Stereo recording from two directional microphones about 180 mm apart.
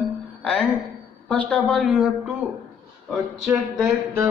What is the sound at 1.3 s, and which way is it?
Speech, 5° left (ahead or behind).